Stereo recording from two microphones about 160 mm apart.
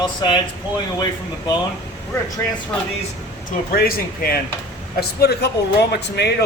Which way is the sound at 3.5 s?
65° left (ahead or behind).